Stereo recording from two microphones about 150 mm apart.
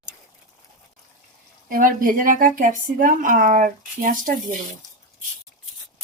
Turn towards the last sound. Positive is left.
turn(degrees=-60)  # may be behind; listen again after turning